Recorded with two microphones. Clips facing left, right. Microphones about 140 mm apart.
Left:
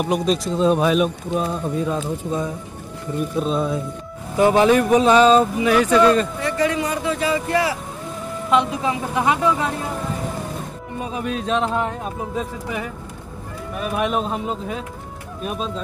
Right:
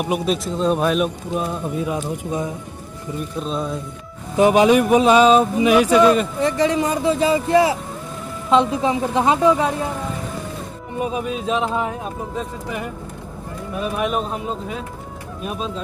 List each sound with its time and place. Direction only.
0.0 s speech: 5° right (ahead or behind)
3.2 s speech: centre (ahead or behind)
4.4 s speech: 15° right (ahead or behind)
6.4 s a man's voice: 25° right (ahead or behind)
11.0 s speech: 10° right (ahead or behind)
13.7 s speech: centre (ahead or behind)